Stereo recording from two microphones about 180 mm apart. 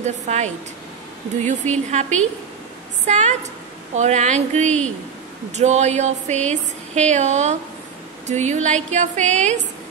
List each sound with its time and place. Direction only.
0.0 s a woman's voice: 40° right (ahead or behind)